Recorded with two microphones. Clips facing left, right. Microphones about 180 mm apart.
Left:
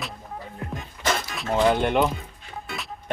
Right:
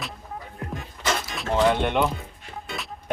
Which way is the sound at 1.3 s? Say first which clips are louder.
Even; 5° left (ahead or behind).